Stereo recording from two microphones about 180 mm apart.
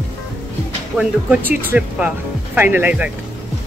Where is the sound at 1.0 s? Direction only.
10° right (ahead or behind).